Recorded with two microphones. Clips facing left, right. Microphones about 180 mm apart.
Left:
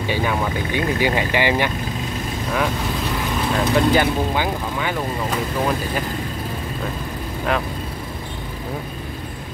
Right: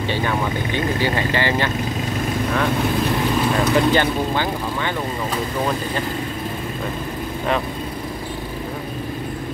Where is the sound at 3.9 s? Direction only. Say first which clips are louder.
Even; 10° left (ahead or behind).